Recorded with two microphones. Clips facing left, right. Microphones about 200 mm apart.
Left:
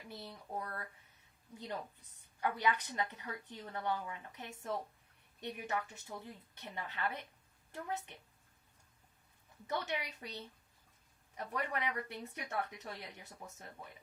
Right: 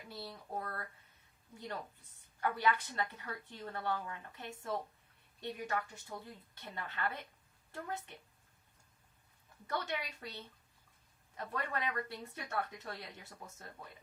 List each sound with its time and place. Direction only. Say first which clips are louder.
0.1 s a woman's voice: right 2 dB; 20° left (ahead or behind)
2.4 s a woman's voice: right 1 dB; 20° left (ahead or behind)
9.6 s a woman's voice: even; 15° left (ahead or behind)